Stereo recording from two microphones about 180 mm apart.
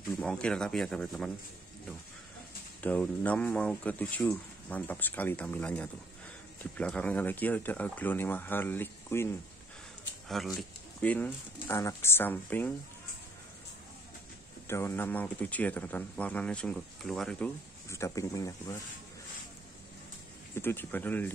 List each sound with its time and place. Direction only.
0.2 s speech: 5° left (ahead or behind)
2.8 s speech: 10° left (ahead or behind)
10.2 s speech: centre (ahead or behind)
14.7 s speech: 15° left (ahead or behind)
17.8 s speech: 15° left (ahead or behind)
20.5 s speech: 10° left (ahead or behind)